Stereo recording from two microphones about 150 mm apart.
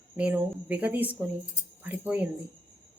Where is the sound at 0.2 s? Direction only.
10° right (ahead or behind).